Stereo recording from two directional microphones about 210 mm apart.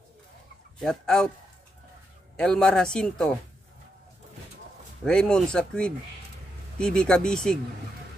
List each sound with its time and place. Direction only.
0.7 s speech: 5° left (ahead or behind)
2.3 s speech: 5° left (ahead or behind)
5.0 s speech: 5° left (ahead or behind)